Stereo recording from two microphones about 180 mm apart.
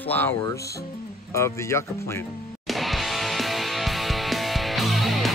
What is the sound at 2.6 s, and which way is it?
Music, centre (ahead or behind).